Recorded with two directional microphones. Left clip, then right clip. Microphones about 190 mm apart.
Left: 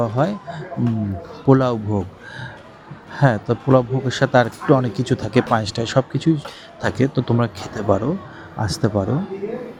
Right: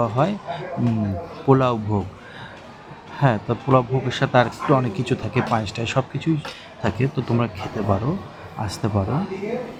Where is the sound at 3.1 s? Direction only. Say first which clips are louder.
Left 3 dB; 15° left (ahead or behind).